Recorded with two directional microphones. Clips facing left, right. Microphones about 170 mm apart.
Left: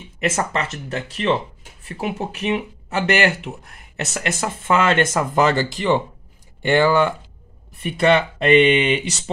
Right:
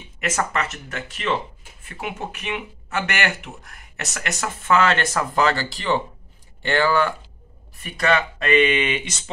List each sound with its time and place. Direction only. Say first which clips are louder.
0.2 s speech: left 2 dB; 30° left (ahead or behind)